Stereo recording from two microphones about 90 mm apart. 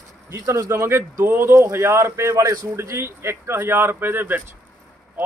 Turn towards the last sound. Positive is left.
turn(degrees=-20)  # may be behind; listen again after turning